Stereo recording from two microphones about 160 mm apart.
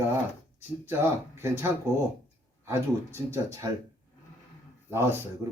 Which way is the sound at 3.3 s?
15° right (ahead or behind).